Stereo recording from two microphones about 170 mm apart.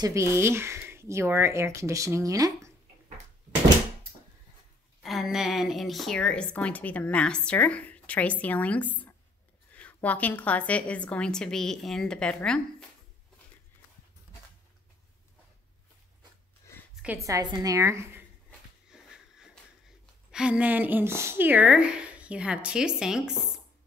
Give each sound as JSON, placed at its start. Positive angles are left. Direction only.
{"t": 0.0, "sound": "a woman's voice", "side_deg": -15}
{"t": 5.0, "sound": "a woman's voice", "side_deg": 0}
{"t": 17.0, "sound": "a woman's voice", "side_deg": -15}
{"t": 18.5, "sound": "a sound", "side_deg": -5}
{"t": 20.2, "sound": "a woman's voice", "side_deg": -5}